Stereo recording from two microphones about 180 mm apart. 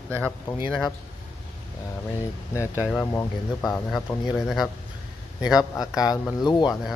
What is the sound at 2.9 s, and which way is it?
Speech, 10° left (ahead or behind).